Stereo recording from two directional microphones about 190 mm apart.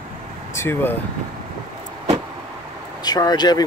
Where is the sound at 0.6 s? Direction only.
10° left (ahead or behind).